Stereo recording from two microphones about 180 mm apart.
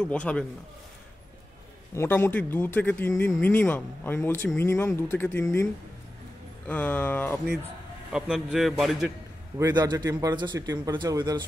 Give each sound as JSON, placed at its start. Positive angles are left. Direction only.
{"t": 0.0, "sound": "speech", "side_deg": 5}
{"t": 2.0, "sound": "speech", "side_deg": 10}
{"t": 6.7, "sound": "speech", "side_deg": 10}
{"t": 8.1, "sound": "a man's voice", "side_deg": -5}
{"t": 9.6, "sound": "speech", "side_deg": -20}